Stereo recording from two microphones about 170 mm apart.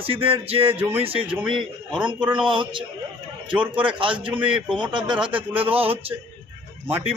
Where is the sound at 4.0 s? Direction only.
30° right (ahead or behind).